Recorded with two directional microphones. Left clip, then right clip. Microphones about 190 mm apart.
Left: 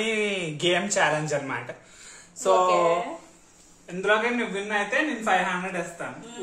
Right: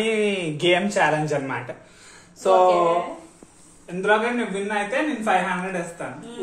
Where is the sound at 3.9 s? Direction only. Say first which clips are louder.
Right 3 dB; 10° right (ahead or behind).